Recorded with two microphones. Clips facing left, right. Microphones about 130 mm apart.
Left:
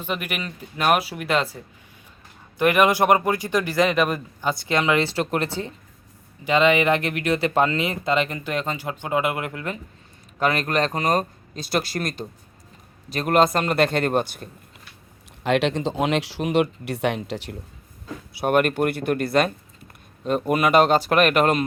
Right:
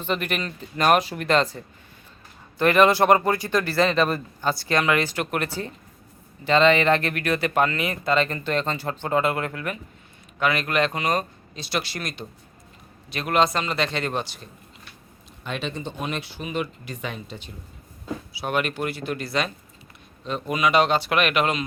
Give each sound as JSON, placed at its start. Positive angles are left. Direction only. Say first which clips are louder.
{"t": 0.0, "sound": "speech", "louder": "right 2 dB", "side_deg": 10}
{"t": 6.4, "sound": "speech", "louder": "even", "side_deg": 10}
{"t": 10.4, "sound": "a man's voice", "louder": "left 1 dB", "side_deg": 40}
{"t": 15.4, "sound": "speech", "louder": "left 9 dB", "side_deg": 90}
{"t": 18.3, "sound": "a man's voice", "louder": "left 7 dB", "side_deg": 50}